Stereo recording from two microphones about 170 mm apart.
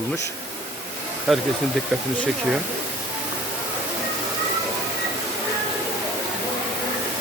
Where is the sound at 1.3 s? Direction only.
Centre (ahead or behind).